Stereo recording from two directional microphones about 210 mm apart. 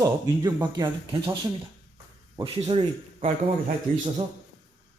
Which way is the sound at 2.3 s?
25° right (ahead or behind).